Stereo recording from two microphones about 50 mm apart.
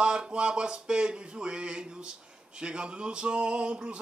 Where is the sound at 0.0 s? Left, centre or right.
Centre.